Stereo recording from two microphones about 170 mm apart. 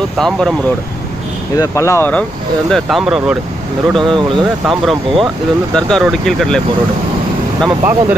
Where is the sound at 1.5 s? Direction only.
20° left (ahead or behind).